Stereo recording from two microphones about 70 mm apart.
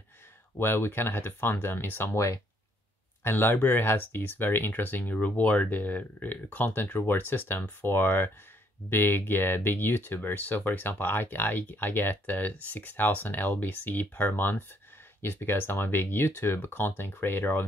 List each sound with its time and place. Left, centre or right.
0.6 s speech: left
3.3 s speech: left